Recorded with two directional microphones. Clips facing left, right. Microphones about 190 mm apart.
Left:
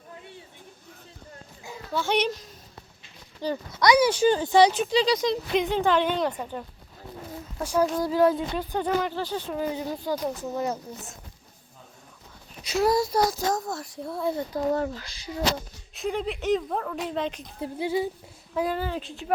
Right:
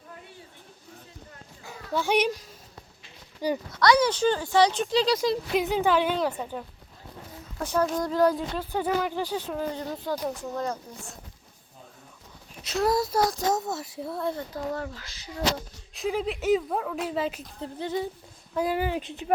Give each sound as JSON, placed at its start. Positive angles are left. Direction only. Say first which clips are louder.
{"t": 1.9, "sound": "a child's voice", "louder": "right 1 dB", "side_deg": -15}
{"t": 3.8, "sound": "speech", "louder": "left 2 dB", "side_deg": 10}
{"t": 7.6, "sound": "speech", "louder": "left 2 dB", "side_deg": 10}
{"t": 9.5, "sound": "speech", "louder": "left 2 dB", "side_deg": 5}
{"t": 12.6, "sound": "speech", "louder": "left 2 dB", "side_deg": 0}
{"t": 14.8, "sound": "speech", "louder": "left 6 dB", "side_deg": 20}
{"t": 16.0, "sound": "speech", "louder": "right 1 dB", "side_deg": 0}
{"t": 17.6, "sound": "speech", "louder": "left 3 dB", "side_deg": 10}
{"t": 18.8, "sound": "a child's voice", "louder": "right 2 dB", "side_deg": -15}